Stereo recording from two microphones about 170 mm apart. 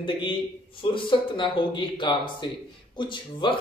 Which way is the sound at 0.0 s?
30° left (ahead or behind).